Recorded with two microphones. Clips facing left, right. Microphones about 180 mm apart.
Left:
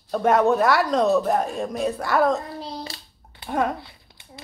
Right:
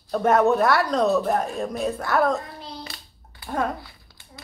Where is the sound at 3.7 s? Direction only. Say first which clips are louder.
Left 1 dB; 25° left (ahead or behind).